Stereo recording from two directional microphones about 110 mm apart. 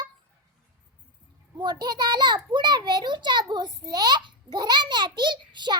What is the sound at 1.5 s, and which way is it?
A child's voice, 40° right (ahead or behind).